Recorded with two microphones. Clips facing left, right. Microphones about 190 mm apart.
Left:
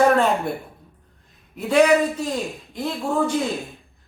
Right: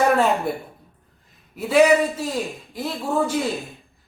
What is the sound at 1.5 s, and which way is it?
Speech, 5° right (ahead or behind).